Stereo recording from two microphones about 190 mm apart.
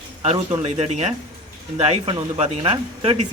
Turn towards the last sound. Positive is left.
turn(degrees=-30)  # may be behind; listen again after turning